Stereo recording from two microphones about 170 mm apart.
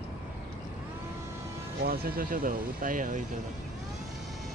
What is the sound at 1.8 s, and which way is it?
Speech, 60° right (ahead or behind).